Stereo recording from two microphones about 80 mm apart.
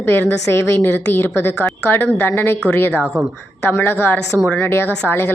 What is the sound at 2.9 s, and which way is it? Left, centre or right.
Speech, centre.